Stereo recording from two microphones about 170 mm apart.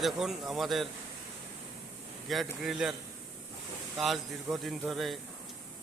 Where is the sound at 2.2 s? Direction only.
Centre (ahead or behind).